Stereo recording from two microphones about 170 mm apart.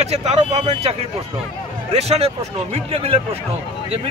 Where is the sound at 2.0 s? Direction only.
35° right (ahead or behind).